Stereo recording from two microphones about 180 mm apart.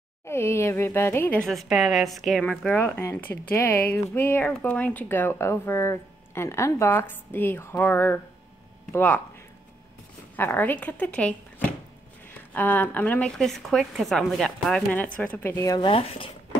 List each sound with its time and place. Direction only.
0.2 s speech: 15° left (ahead or behind)
10.3 s a woman's voice: 10° left (ahead or behind)
15.9 s speech: 35° left (ahead or behind)